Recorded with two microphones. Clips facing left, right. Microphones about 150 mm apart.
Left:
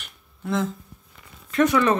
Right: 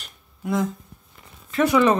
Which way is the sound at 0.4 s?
10° right (ahead or behind).